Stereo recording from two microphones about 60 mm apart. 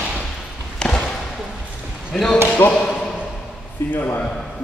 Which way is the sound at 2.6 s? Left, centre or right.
Left.